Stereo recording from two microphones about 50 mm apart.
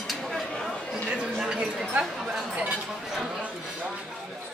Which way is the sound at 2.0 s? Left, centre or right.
Centre.